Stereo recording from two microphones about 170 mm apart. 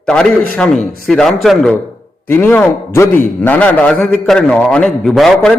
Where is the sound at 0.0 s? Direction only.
5° left (ahead or behind).